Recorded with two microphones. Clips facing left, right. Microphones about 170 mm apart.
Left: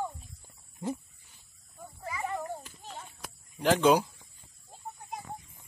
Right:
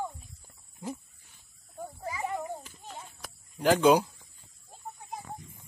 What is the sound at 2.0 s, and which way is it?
Children playing, 25° right (ahead or behind).